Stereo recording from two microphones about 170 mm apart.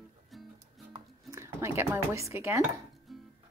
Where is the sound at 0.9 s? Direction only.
15° right (ahead or behind).